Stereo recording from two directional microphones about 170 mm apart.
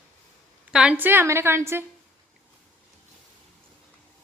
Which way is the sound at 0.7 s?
10° right (ahead or behind).